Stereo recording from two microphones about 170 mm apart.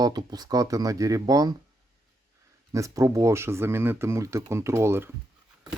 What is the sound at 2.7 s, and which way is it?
Speech, 20° right (ahead or behind).